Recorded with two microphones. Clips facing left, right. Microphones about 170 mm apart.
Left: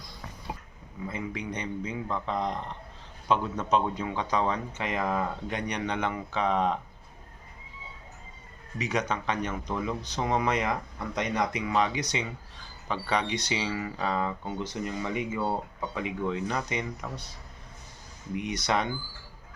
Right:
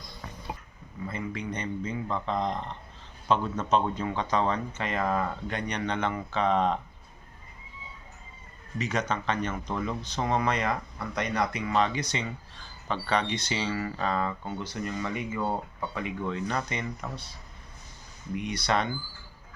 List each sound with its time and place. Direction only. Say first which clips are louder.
1.0 s speech: even; 15° left (ahead or behind)
8.8 s speech: even; 15° left (ahead or behind)
18.3 s speech: even; 15° left (ahead or behind)